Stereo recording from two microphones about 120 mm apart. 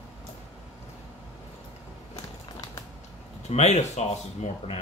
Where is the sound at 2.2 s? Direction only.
30° left (ahead or behind).